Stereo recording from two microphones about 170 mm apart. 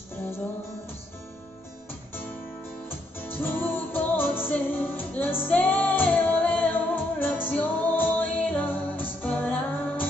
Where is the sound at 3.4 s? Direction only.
10° left (ahead or behind).